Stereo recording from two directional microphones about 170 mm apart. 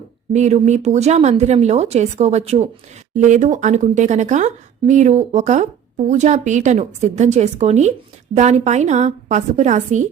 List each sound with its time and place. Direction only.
0.3 s a woman's voice: 40° right (ahead or behind)